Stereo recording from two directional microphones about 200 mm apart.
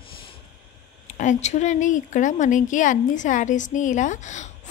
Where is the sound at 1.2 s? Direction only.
35° left (ahead or behind).